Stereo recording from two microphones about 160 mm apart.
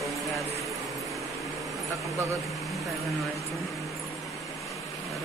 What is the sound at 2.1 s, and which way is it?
Speech, 20° right (ahead or behind).